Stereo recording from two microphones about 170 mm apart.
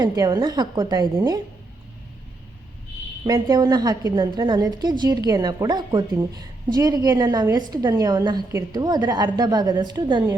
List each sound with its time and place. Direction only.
0.0 s a woman's voice: 25° right (ahead or behind)
3.2 s a woman's voice: 25° right (ahead or behind)